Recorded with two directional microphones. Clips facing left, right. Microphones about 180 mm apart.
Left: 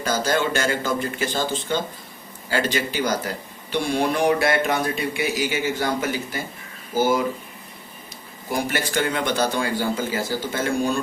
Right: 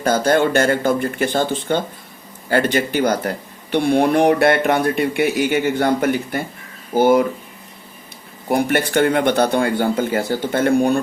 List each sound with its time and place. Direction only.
0.0 s speech: 55° right (ahead or behind)
8.4 s speech: 60° right (ahead or behind)